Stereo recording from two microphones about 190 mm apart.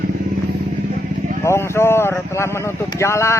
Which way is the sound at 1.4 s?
15° left (ahead or behind).